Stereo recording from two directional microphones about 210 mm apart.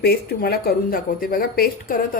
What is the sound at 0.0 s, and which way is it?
A woman's voice, 50° left (ahead or behind).